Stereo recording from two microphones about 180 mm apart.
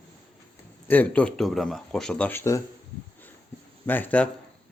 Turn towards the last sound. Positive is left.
turn(degrees=10)  # may be behind; listen again after turning